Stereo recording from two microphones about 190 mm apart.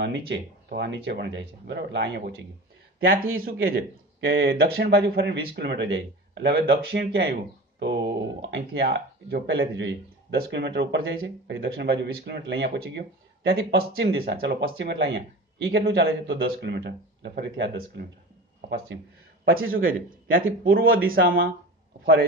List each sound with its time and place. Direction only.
0.0 s speech: 65° right (ahead or behind)
3.6 s speech: 60° right (ahead or behind)
19.7 s a man's voice: 50° right (ahead or behind)